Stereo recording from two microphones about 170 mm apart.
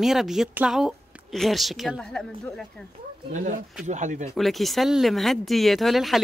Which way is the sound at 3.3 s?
45° right (ahead or behind).